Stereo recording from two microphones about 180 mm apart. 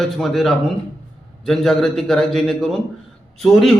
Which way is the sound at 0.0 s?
Centre (ahead or behind).